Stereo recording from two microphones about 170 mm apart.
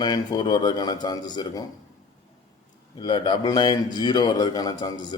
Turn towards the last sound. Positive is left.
turn(degrees=25)  # may be behind; listen again after turning